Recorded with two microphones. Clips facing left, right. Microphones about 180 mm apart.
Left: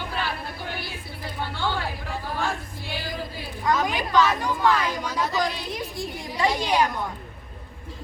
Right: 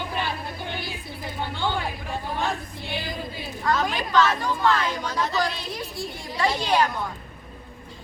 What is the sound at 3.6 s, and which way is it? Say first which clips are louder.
A woman's voice: left 1 dB; 15° left (ahead or behind).